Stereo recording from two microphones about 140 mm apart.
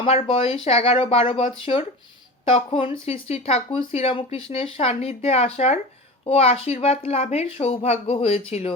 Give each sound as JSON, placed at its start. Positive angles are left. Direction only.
{"t": 0.0, "sound": "speech", "side_deg": 45}